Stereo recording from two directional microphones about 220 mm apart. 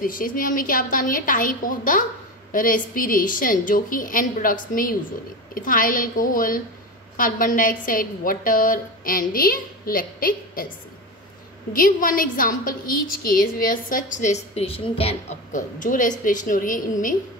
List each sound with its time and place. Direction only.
0.0 s a woman's voice: 40° left (ahead or behind)
11.7 s a woman's voice: 40° left (ahead or behind)